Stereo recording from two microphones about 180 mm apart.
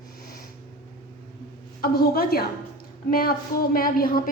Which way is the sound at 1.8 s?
60° left (ahead or behind).